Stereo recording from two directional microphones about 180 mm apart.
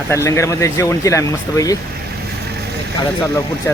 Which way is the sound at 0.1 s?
15° left (ahead or behind).